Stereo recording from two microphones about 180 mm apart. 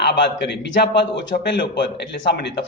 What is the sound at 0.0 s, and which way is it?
A man's voice, 70° left (ahead or behind).